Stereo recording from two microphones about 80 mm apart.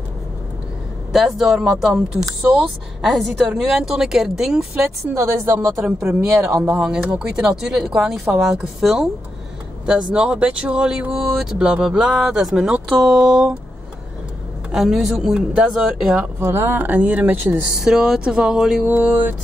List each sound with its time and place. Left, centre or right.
1.1 s speech: centre
5.1 s speech: right
6.6 s speech: centre
14.7 s speech: centre
16.3 s speech: right
16.7 s speech: right
17.6 s speech: centre
18.9 s speech: right